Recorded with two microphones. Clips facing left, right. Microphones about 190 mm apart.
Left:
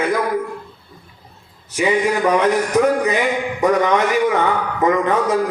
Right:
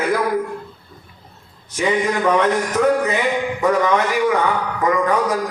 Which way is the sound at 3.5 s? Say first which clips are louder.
Left 2 dB; 20° left (ahead or behind).